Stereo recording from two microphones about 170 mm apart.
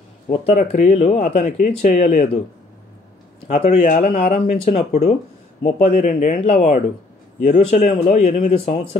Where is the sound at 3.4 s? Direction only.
40° left (ahead or behind).